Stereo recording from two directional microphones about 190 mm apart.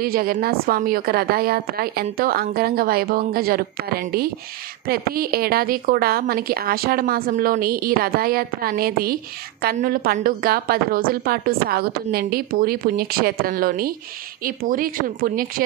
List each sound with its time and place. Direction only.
0.0 s a woman's voice: 50° right (ahead or behind)